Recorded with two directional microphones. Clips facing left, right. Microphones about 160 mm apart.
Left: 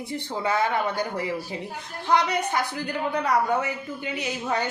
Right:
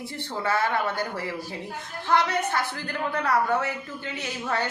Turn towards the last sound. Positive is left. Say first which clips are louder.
# left 2 dB
turn(degrees=15)  # may be behind; listen again after turning